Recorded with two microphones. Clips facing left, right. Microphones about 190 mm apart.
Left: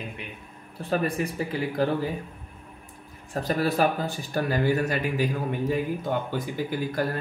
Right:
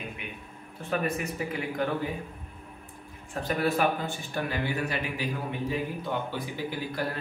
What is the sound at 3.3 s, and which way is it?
Speech, 35° left (ahead or behind).